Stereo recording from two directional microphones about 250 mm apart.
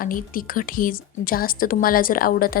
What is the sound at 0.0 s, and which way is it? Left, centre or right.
A woman's voice, left.